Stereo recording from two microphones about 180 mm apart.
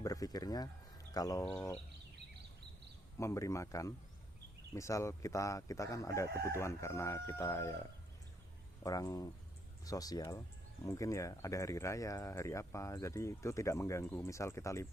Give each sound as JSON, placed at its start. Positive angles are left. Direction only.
{"t": 0.0, "sound": "a sound", "side_deg": 20}
{"t": 1.1, "sound": "speech", "side_deg": 20}
{"t": 3.2, "sound": "speech", "side_deg": 15}